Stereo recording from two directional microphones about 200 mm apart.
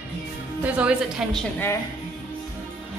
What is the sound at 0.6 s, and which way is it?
Speech, 5° right (ahead or behind).